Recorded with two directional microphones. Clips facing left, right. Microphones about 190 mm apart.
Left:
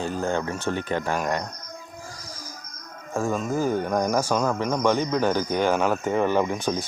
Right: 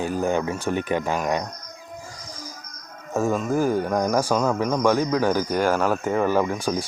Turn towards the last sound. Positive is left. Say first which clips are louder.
# right 1 dB
turn(degrees=-10)  # may be behind; listen again after turning